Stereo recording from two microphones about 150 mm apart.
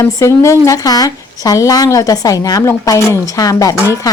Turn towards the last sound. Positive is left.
turn(degrees=20)  # may be behind; listen again after turning